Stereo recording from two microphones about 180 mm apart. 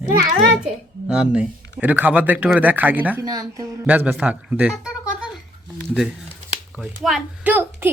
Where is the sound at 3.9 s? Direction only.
10° right (ahead or behind).